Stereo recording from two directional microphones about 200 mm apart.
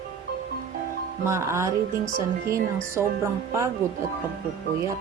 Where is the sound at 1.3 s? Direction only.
15° right (ahead or behind).